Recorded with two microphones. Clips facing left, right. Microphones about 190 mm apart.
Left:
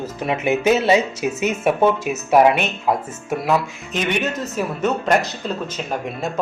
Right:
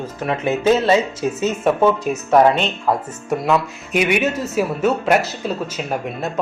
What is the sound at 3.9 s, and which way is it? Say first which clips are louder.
Speech: right 4 dB; 10° right (ahead or behind).